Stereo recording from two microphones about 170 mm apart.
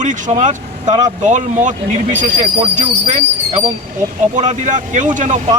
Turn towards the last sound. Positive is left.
turn(degrees=-45)  # may be behind; listen again after turning